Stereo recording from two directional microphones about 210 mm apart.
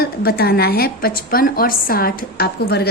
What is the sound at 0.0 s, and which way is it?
A woman's voice, 45° left (ahead or behind).